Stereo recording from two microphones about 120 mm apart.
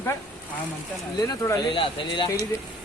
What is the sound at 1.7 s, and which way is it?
Speech, 40° left (ahead or behind).